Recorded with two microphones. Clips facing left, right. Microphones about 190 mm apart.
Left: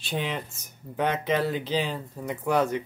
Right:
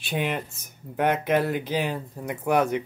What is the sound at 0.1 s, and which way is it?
Speech, 10° right (ahead or behind).